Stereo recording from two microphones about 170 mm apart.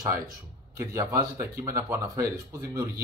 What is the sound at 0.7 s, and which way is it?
A man's voice, 20° right (ahead or behind).